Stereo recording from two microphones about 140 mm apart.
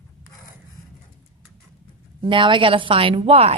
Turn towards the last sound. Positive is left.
turn(degrees=-45)  # may be behind; listen again after turning